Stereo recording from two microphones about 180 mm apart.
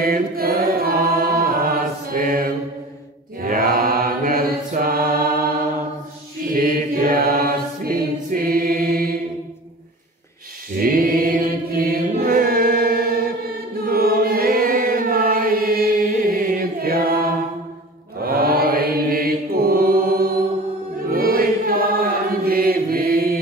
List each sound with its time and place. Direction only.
0.0 s chant: 55° right (ahead or behind)
2.0 s mantra: 50° right (ahead or behind)
6.5 s mantra: 50° right (ahead or behind)
10.8 s chant: 50° right (ahead or behind)
18.2 s mantra: 55° right (ahead or behind)
21.1 s chant: 55° right (ahead or behind)